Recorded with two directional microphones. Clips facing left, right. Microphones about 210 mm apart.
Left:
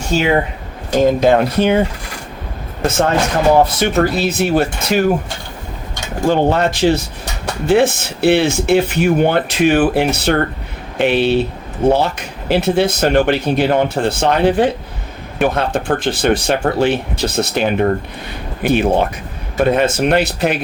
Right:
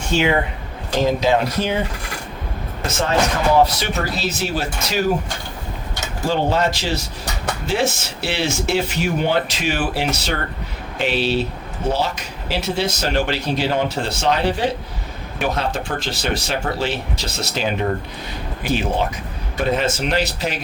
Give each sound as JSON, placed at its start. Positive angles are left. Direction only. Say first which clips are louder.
{"t": 1.0, "sound": "speech", "louder": "left 6 dB", "side_deg": 55}
{"t": 2.8, "sound": "speech", "louder": "left 4 dB", "side_deg": 55}
{"t": 6.2, "sound": "speech", "louder": "left 5 dB", "side_deg": 55}